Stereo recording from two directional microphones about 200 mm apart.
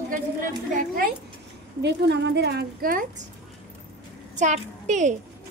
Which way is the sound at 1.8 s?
60° right (ahead or behind).